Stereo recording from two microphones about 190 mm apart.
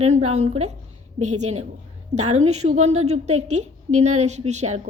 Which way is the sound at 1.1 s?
35° right (ahead or behind).